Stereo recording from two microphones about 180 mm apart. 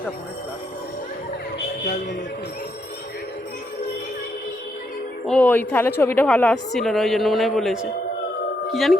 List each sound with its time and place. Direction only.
1.5 s music: 65° left (ahead or behind)
5.2 s a woman's voice: 5° left (ahead or behind)